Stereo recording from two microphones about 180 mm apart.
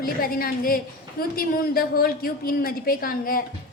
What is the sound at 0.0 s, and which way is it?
A woman's voice, 55° left (ahead or behind).